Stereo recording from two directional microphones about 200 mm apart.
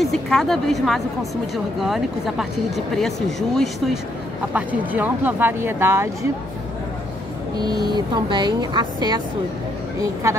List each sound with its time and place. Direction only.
0.0 s speech: centre (ahead or behind)
7.5 s speech: 20° right (ahead or behind)